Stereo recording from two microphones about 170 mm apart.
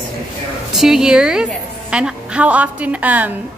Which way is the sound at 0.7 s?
5° right (ahead or behind).